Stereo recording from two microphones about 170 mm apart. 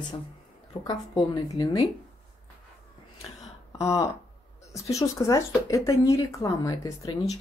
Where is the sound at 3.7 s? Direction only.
20° left (ahead or behind).